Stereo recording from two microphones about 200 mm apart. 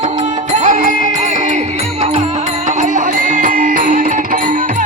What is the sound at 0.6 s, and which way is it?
Music, 40° right (ahead or behind).